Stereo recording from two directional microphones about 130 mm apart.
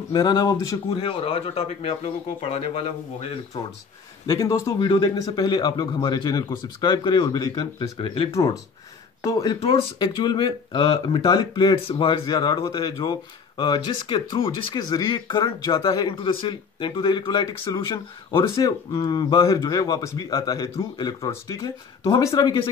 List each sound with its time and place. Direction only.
0.1 s speech: 30° left (ahead or behind)
0.9 s a man's voice: 45° left (ahead or behind)
4.3 s speech: 25° left (ahead or behind)
4.7 s speech: 35° left (ahead or behind)
8.3 s speech: 25° left (ahead or behind)
9.6 s speech: 45° left (ahead or behind)